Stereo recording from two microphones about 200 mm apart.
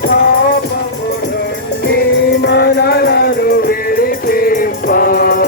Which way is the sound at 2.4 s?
55° left (ahead or behind).